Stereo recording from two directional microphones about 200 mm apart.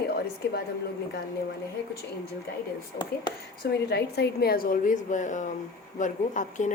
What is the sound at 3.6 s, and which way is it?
A woman's voice, 55° left (ahead or behind).